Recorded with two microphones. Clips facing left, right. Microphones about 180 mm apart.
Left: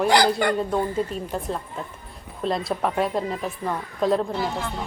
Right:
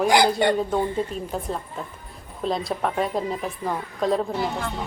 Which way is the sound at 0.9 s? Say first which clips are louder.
Left 1 dB; centre (ahead or behind).